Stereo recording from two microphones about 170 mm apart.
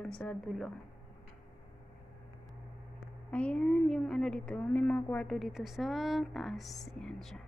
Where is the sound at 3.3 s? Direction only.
5° left (ahead or behind).